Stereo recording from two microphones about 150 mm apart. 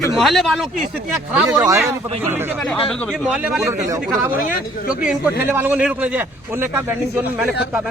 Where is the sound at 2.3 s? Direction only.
15° right (ahead or behind).